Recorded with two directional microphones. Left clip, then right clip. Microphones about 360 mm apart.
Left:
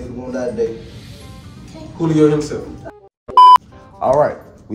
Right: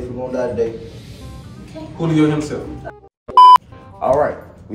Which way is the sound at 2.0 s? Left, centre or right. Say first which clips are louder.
Left 3 dB; centre.